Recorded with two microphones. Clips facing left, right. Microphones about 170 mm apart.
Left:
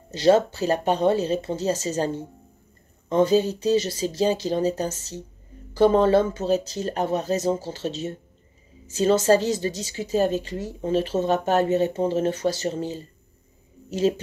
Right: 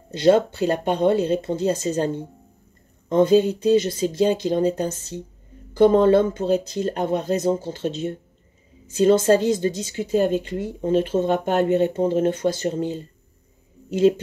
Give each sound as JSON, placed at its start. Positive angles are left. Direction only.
{"t": 0.1, "sound": "a woman's voice", "side_deg": -55}
{"t": 3.3, "sound": "a woman's voice", "side_deg": -55}